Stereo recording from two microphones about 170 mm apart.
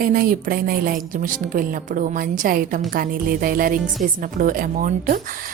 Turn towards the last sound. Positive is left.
turn(degrees=-50)  # may be behind; listen again after turning